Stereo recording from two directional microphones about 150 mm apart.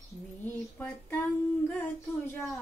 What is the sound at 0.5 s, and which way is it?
Female singing, 15° left (ahead or behind).